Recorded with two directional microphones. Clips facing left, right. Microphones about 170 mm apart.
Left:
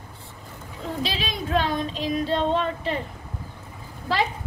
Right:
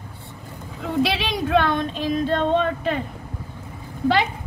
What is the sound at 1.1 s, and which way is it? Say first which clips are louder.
A woman's voice: right 5 dB; 75° right (ahead or behind).